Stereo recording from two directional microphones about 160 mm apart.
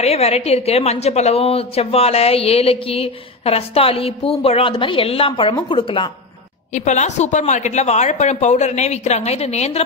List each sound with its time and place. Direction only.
0.0 s a woman's voice: 40° left (ahead or behind)
6.7 s speech: 45° left (ahead or behind)